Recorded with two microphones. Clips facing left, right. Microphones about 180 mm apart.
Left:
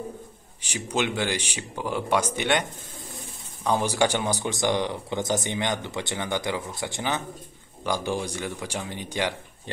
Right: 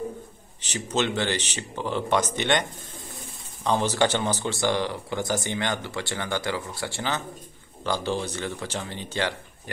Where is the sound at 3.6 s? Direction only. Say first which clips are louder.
Even; 10° left (ahead or behind).